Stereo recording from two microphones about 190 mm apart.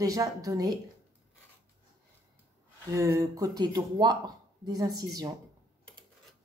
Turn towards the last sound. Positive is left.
turn(degrees=-20)  # may be behind; listen again after turning